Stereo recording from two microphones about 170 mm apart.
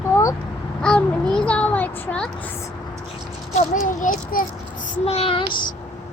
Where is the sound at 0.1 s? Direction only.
20° left (ahead or behind).